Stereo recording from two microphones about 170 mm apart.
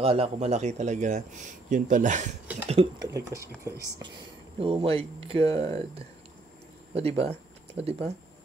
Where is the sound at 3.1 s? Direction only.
15° right (ahead or behind).